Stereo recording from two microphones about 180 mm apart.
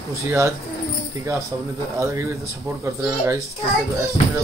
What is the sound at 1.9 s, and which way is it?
Speech, 15° right (ahead or behind).